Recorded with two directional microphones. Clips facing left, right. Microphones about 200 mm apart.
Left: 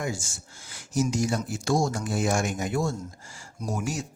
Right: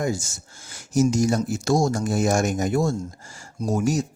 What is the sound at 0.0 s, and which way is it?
Speech, 40° right (ahead or behind).